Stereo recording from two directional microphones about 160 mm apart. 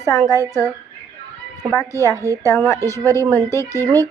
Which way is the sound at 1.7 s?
20° left (ahead or behind).